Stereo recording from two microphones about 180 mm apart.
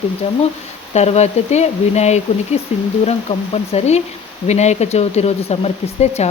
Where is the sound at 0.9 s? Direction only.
35° left (ahead or behind).